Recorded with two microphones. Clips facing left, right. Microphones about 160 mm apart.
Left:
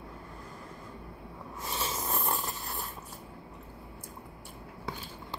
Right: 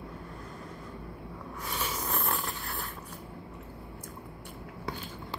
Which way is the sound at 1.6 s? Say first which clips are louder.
Even; 25° left (ahead or behind).